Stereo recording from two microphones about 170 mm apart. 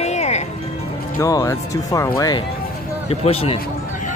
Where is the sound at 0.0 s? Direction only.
40° left (ahead or behind).